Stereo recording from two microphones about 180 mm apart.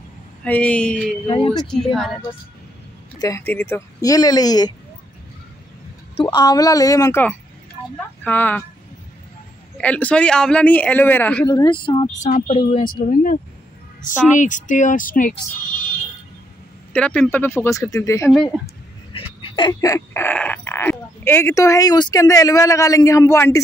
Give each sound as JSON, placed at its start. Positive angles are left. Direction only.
{"t": 0.4, "sound": "speech", "side_deg": 10}
{"t": 1.2, "sound": "speech", "side_deg": 30}
{"t": 1.5, "sound": "speech", "side_deg": 0}
{"t": 3.2, "sound": "speech", "side_deg": 15}
{"t": 6.2, "sound": "speech", "side_deg": 20}
{"t": 9.8, "sound": "speech", "side_deg": 10}
{"t": 11.4, "sound": "speech", "side_deg": 25}
{"t": 12.2, "sound": "speech", "side_deg": 40}
{"t": 16.9, "sound": "speech", "side_deg": 5}
{"t": 18.3, "sound": "speech", "side_deg": 0}
{"t": 19.1, "sound": "speech", "side_deg": 25}